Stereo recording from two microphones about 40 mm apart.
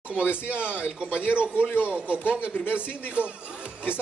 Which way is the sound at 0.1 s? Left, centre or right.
Right.